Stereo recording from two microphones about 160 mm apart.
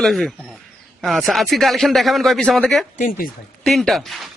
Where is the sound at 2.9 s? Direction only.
55° left (ahead or behind).